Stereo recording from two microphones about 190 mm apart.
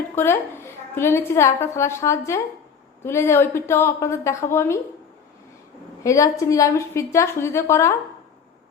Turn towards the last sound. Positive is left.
turn(degrees=15)  # may be behind; listen again after turning